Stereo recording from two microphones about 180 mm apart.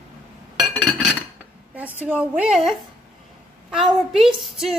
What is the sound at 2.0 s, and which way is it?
Speech, 10° right (ahead or behind).